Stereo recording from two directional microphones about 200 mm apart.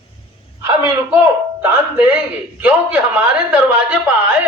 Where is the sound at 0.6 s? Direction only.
15° right (ahead or behind).